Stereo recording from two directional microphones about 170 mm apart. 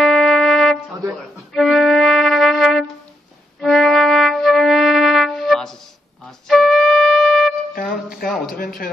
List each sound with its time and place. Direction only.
0.0 s music: centre (ahead or behind)
6.2 s wind instrument: centre (ahead or behind)
7.7 s music: 55° left (ahead or behind)